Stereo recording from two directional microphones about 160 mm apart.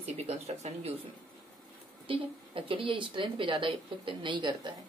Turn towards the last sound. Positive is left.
turn(degrees=-30)  # may be behind; listen again after turning